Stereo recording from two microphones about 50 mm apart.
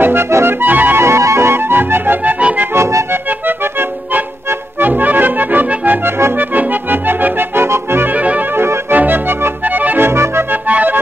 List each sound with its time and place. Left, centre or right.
0.0 s accordion: right
0.6 s music: right
0.9 s accordion: right
2.7 s accordion: right
3.1 s accordion: right
6.0 s accordion: right
6.3 s accordion: right
8.1 s organ: right
8.9 s accordion: right
10.0 s accordion: right
10.5 s music: right